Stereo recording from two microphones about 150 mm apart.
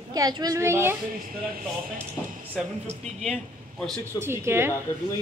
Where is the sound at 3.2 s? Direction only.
5° left (ahead or behind).